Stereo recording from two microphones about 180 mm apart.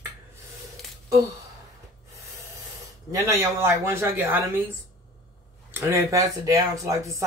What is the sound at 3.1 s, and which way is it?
Speech, 15° right (ahead or behind).